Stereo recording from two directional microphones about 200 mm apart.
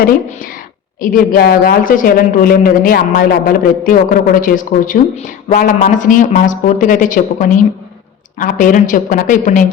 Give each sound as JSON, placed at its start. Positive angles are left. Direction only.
{"t": 0.0, "sound": "a woman's voice", "side_deg": 45}